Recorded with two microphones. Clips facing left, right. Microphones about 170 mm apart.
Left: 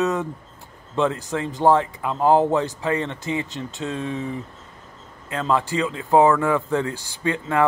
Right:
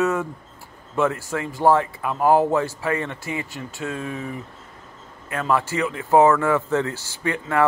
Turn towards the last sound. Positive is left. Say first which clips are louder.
# left 1 dB
turn(degrees=20)  # may be behind; listen again after turning